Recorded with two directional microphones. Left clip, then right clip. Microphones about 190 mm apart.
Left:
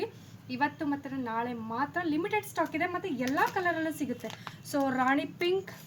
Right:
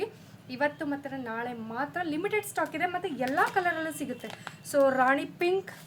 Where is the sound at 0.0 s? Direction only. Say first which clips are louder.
Right 2 dB; 20° right (ahead or behind).